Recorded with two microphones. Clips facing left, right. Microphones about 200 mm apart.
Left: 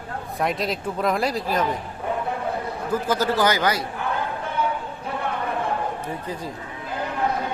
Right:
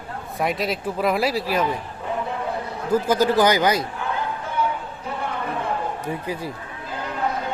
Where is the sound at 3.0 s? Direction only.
15° right (ahead or behind).